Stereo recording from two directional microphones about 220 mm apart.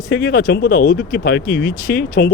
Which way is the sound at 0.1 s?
45° left (ahead or behind).